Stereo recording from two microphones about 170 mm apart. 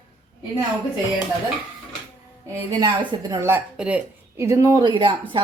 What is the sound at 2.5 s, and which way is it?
Speech, 25° right (ahead or behind).